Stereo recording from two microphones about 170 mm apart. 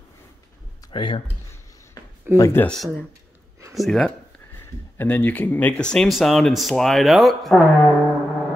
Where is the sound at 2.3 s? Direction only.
15° left (ahead or behind).